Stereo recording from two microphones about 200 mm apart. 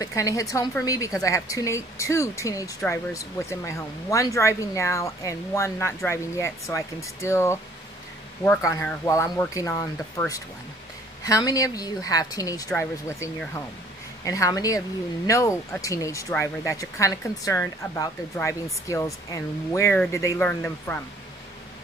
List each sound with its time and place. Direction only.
0.0 s a woman's voice: 15° left (ahead or behind)